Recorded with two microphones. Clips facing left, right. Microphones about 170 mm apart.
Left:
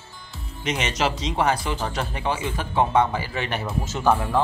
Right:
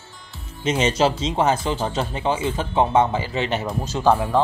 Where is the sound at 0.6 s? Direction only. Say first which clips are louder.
Right 6 dB; 30° right (ahead or behind).